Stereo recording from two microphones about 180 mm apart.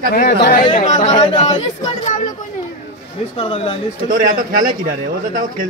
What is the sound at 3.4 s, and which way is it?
Speech, 30° left (ahead or behind).